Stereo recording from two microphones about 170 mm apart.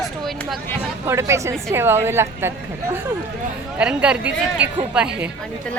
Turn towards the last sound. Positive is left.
turn(degrees=-5)  # may be behind; listen again after turning